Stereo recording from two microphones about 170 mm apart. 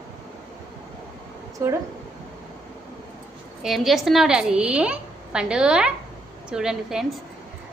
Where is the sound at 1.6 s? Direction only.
20° right (ahead or behind).